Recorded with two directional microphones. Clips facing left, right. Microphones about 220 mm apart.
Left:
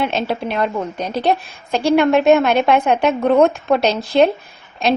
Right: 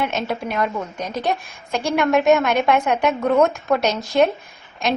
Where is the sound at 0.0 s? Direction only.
30° left (ahead or behind).